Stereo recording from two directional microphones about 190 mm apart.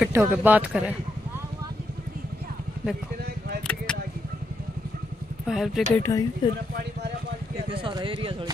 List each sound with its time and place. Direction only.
0.0 s speech: 10° right (ahead or behind)
3.6 s a sound: 5° left (ahead or behind)
5.5 s speech: centre (ahead or behind)
5.9 s speech: 15° left (ahead or behind)
7.7 s speech: 25° right (ahead or behind)